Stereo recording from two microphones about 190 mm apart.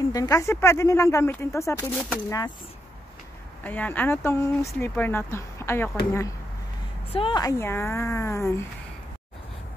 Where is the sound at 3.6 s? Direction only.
10° left (ahead or behind).